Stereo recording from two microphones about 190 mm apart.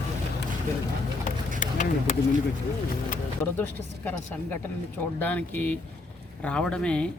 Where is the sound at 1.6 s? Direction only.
40° left (ahead or behind).